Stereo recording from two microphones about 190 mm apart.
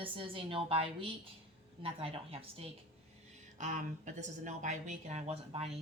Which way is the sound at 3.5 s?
40° right (ahead or behind).